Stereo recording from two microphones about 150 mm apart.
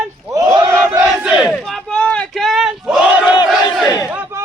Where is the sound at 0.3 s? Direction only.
20° right (ahead or behind).